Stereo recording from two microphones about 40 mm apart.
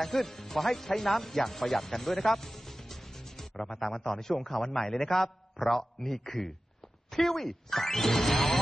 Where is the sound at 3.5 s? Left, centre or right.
Centre.